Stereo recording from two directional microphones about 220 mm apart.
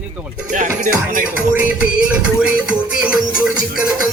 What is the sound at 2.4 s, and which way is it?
A man's voice, 5° right (ahead or behind).